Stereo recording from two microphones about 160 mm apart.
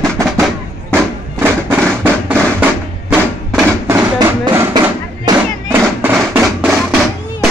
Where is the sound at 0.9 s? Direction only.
15° right (ahead or behind).